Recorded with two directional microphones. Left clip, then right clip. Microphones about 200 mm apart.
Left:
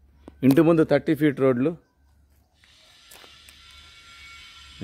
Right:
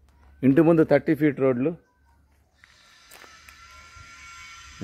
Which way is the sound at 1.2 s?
15° left (ahead or behind).